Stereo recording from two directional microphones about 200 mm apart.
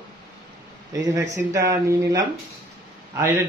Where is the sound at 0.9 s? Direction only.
15° right (ahead or behind).